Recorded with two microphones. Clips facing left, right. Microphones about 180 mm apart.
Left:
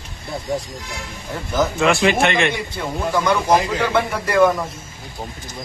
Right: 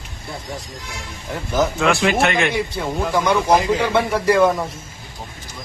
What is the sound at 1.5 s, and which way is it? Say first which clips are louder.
Speech: even; centre (ahead or behind).